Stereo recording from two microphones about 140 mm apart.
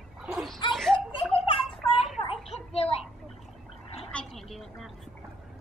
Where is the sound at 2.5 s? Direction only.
45° left (ahead or behind).